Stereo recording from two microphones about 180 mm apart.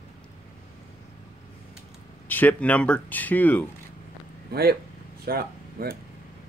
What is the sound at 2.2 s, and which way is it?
Speech, 10° left (ahead or behind).